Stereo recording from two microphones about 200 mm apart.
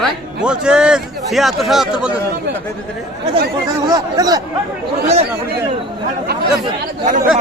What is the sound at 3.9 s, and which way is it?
Speech, 20° right (ahead or behind).